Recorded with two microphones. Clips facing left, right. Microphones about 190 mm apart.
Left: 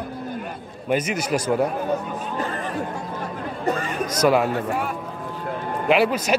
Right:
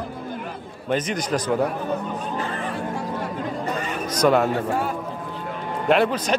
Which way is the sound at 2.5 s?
40° left (ahead or behind).